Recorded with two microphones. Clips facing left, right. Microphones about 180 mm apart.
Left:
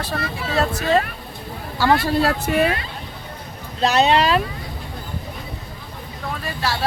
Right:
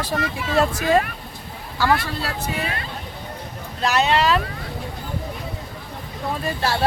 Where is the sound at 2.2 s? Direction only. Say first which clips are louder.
Left 8 dB; 60° left (ahead or behind).